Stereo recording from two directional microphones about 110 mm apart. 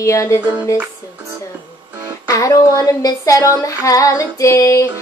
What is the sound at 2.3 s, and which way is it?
Speech, 30° left (ahead or behind).